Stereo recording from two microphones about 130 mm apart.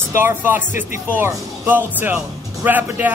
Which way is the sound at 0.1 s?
15° right (ahead or behind).